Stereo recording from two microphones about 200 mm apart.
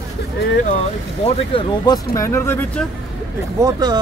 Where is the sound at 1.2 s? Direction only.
25° left (ahead or behind).